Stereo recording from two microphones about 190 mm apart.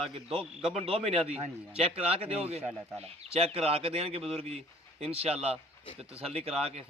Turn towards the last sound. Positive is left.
turn(degrees=-35)  # may be behind; listen again after turning